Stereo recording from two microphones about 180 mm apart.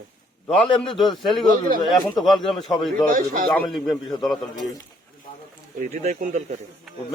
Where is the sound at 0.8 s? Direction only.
Centre (ahead or behind).